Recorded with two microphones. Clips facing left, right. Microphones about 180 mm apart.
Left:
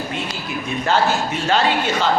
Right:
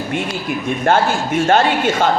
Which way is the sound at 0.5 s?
50° right (ahead or behind).